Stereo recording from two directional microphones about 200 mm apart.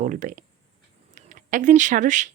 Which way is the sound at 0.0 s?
40° right (ahead or behind).